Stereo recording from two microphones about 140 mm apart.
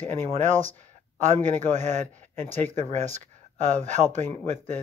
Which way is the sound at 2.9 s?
60° right (ahead or behind).